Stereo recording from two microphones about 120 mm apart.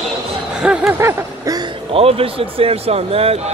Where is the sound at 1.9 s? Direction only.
55° right (ahead or behind).